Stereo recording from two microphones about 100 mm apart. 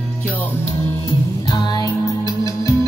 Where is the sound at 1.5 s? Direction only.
40° left (ahead or behind).